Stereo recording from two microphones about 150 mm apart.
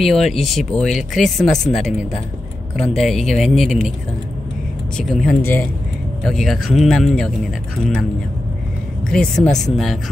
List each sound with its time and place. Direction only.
0.0 s speech: centre (ahead or behind)
4.9 s speech: centre (ahead or behind)
5.4 s speech: 15° left (ahead or behind)
6.2 s speech: centre (ahead or behind)
9.1 s speech: 5° left (ahead or behind)